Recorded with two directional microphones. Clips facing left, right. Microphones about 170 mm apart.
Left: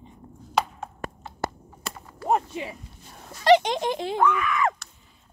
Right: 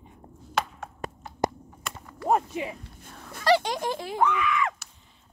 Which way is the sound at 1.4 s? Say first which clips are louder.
Right 4 dB; 15° right (ahead or behind).